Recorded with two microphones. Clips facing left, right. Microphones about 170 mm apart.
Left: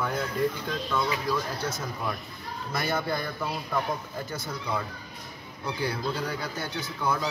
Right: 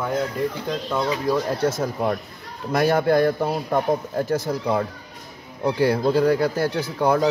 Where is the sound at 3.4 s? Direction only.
45° right (ahead or behind); by 7.3 s 70° right (ahead or behind).